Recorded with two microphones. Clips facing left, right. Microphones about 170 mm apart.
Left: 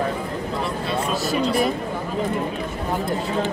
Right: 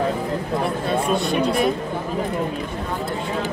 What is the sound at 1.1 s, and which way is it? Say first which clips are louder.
Speech: left 1 dB; centre (ahead or behind).